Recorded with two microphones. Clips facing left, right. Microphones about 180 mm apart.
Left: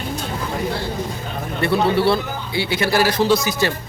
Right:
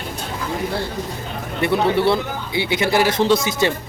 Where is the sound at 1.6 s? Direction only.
20° right (ahead or behind).